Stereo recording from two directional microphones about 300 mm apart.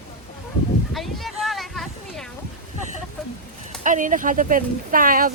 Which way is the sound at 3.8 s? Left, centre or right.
Right.